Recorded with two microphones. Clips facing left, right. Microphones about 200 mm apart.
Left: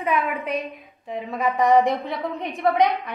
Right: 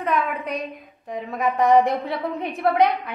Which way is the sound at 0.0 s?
Centre (ahead or behind).